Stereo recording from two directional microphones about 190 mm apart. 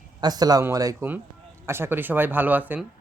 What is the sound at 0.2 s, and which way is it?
A man's voice, 20° right (ahead or behind).